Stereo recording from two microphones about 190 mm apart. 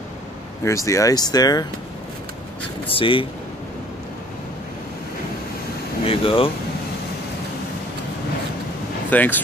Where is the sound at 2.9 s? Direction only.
25° left (ahead or behind).